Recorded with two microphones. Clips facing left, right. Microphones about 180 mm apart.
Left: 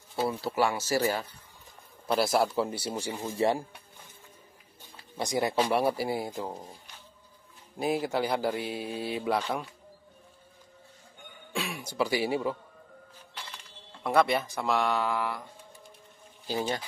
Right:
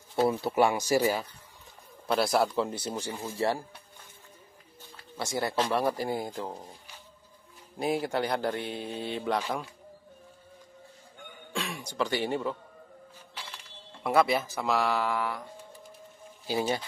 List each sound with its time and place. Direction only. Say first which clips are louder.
0.4 s speech: right 3 dB; 20° right (ahead or behind)
2.0 s speech: even; centre (ahead or behind)
4.9 s speech: left 3 dB; 15° left (ahead or behind)
7.7 s speech: even; centre (ahead or behind)
11.5 s speech: left 1 dB; 5° left (ahead or behind)
13.3 s music: even; 5° right (ahead or behind)
14.0 s speech: even; centre (ahead or behind)